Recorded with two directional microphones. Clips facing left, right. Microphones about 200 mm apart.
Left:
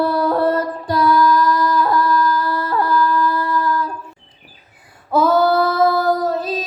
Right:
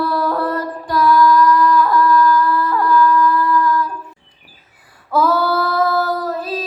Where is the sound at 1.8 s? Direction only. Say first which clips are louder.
Right 3 dB; 30° left (ahead or behind).